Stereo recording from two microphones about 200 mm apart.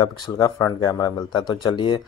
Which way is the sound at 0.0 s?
20° left (ahead or behind).